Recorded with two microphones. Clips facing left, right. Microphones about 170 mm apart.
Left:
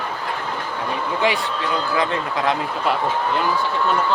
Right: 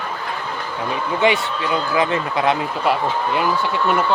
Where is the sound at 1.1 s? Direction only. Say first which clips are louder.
Right 4 dB; centre (ahead or behind).